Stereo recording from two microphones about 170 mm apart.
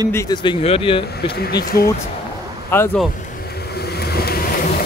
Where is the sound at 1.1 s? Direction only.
65° left (ahead or behind).